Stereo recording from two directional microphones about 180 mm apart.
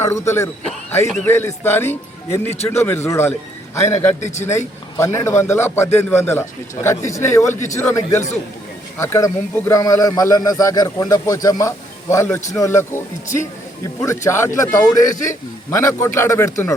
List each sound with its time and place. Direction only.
0.0 s a man's voice: 15° left (ahead or behind)
4.2 s speech: 40° left (ahead or behind)
4.5 s a man's voice: 15° left (ahead or behind)